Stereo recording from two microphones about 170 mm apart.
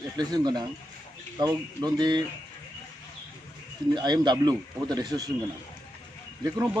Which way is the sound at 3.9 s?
25° right (ahead or behind).